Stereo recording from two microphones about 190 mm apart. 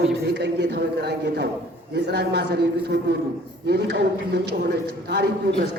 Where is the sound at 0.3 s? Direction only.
65° right (ahead or behind).